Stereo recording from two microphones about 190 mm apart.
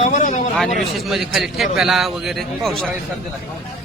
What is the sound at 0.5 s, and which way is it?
A man's voice, centre (ahead or behind).